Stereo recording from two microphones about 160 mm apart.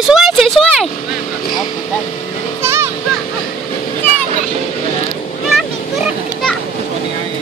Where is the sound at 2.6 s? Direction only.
15° right (ahead or behind).